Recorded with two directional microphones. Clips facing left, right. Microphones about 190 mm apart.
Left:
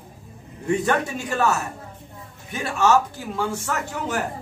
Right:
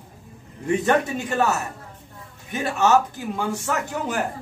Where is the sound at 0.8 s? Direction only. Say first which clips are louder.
Right 2 dB; 20° right (ahead or behind).